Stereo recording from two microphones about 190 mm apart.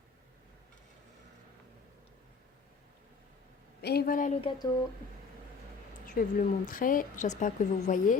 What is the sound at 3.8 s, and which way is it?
Speech, 55° left (ahead or behind).